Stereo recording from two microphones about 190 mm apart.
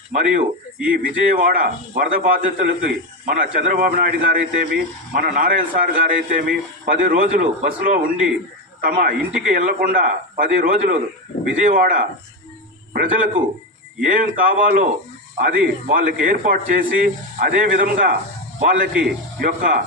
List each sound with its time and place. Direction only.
0.1 s a man's voice: 45° right (ahead or behind)